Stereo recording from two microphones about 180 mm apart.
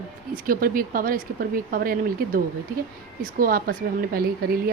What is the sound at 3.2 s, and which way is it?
A woman's voice, 50° right (ahead or behind).